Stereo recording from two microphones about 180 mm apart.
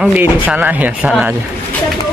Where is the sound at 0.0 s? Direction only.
5° right (ahead or behind).